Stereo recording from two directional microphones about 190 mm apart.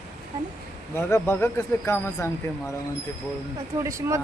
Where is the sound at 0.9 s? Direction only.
10° left (ahead or behind).